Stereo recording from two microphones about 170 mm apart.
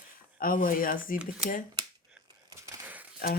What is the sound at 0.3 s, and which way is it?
Speech, 55° left (ahead or behind).